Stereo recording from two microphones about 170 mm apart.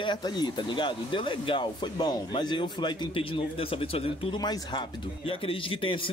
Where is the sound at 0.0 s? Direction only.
25° left (ahead or behind).